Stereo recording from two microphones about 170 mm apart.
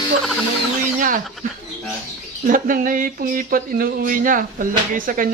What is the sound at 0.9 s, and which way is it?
Speech, 50° right (ahead or behind).